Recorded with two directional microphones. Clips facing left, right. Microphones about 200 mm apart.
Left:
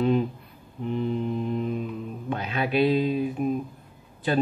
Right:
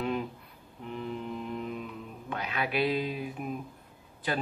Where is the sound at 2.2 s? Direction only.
25° left (ahead or behind).